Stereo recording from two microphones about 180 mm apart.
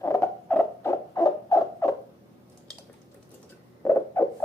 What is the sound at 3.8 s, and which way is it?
Rodents, 15° left (ahead or behind).